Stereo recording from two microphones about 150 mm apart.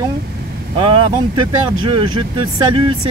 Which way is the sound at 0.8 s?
35° right (ahead or behind).